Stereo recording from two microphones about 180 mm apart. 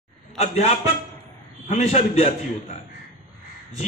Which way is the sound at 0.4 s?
35° left (ahead or behind).